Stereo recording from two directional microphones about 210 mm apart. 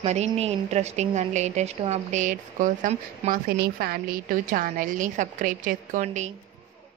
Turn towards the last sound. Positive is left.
turn(degrees=-35)  # may be behind; listen again after turning